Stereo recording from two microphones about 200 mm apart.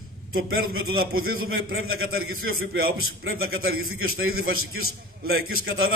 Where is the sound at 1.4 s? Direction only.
75° right (ahead or behind).